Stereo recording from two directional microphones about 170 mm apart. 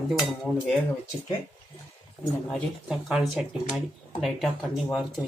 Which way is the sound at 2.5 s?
Centre (ahead or behind).